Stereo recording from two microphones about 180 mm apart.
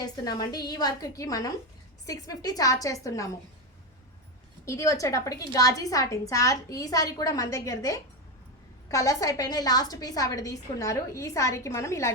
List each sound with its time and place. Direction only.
0.0 s a woman's voice: 20° left (ahead or behind)
4.6 s a woman's voice: 15° left (ahead or behind)